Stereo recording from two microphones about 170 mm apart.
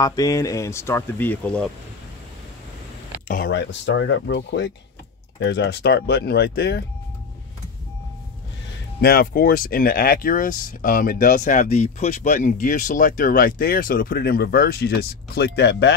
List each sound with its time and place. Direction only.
0.0 s speech: 20° left (ahead or behind)
3.3 s speech: 65° left (ahead or behind)
9.0 s speech: 60° left (ahead or behind); by 15.9 s 85° left